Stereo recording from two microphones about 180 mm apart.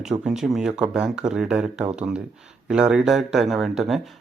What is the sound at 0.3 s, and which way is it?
Speech, centre (ahead or behind).